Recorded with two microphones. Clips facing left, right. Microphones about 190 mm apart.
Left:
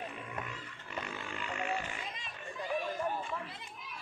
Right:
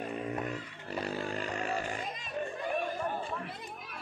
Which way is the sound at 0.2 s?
45° right (ahead or behind).